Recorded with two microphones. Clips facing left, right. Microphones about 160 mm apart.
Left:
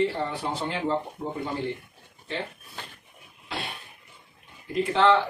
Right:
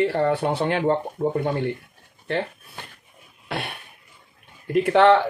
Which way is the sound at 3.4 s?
60° right (ahead or behind).